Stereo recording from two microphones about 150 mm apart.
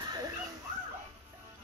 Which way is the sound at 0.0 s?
25° right (ahead or behind).